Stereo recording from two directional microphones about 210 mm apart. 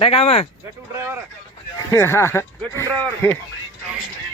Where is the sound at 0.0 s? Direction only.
25° left (ahead or behind).